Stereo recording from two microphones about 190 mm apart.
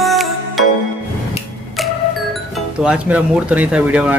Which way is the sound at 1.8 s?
Centre (ahead or behind).